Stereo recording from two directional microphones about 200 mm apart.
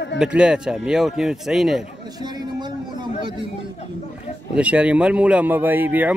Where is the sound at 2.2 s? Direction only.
20° right (ahead or behind).